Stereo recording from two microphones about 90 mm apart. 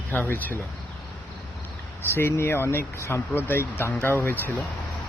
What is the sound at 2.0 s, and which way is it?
Speech, 25° left (ahead or behind).